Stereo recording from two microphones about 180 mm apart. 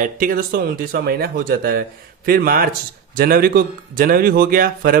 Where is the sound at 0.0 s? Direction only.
50° right (ahead or behind).